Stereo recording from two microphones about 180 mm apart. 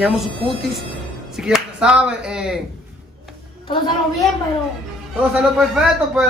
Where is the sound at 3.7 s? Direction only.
25° left (ahead or behind).